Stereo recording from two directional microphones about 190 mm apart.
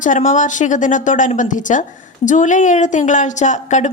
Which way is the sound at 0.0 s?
40° left (ahead or behind).